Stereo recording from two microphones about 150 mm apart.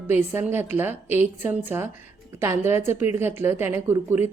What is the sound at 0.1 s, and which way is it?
A woman's voice, 15° right (ahead or behind).